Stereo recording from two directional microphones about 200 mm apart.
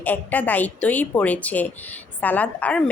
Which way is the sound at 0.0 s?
10° left (ahead or behind).